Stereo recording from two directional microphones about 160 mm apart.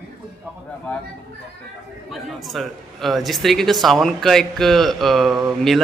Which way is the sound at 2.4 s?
Centre (ahead or behind).